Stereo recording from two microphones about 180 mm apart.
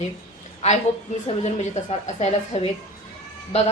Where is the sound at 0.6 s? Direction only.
40° left (ahead or behind).